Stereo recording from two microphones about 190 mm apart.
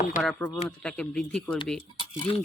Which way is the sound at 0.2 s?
5° left (ahead or behind).